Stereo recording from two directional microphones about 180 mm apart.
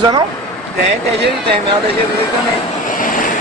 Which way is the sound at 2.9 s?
50° left (ahead or behind).